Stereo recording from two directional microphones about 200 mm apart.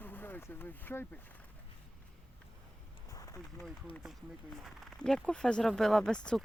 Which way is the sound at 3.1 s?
15° left (ahead or behind).